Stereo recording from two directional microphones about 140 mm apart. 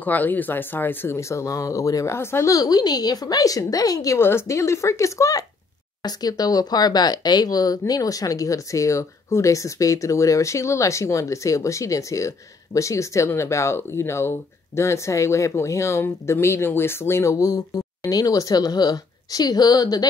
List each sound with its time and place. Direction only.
0.0 s speech: 10° left (ahead or behind); by 20.1 s 30° left (ahead or behind)